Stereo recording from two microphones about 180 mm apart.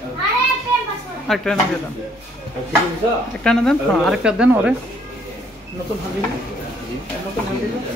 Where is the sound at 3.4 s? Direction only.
5° left (ahead or behind).